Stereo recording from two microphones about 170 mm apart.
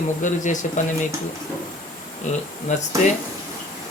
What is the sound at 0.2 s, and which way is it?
Speech, 50° left (ahead or behind).